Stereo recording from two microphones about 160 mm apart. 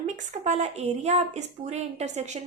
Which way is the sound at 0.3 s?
45° right (ahead or behind).